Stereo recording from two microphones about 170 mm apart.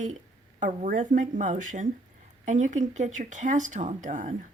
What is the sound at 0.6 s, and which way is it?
A woman's voice, 50° right (ahead or behind).